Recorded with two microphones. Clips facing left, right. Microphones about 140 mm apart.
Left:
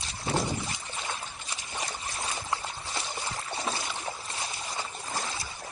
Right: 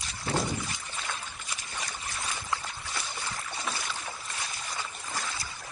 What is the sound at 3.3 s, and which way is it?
Boat, 25° left (ahead or behind).